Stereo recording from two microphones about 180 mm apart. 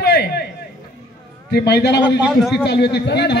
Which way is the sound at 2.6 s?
70° left (ahead or behind).